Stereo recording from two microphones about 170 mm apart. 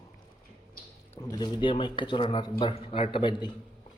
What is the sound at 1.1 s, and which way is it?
Speech, 20° left (ahead or behind).